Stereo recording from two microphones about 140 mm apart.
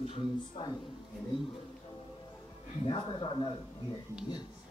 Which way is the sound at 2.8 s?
40° left (ahead or behind).